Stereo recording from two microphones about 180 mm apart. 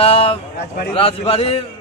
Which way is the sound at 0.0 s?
30° left (ahead or behind).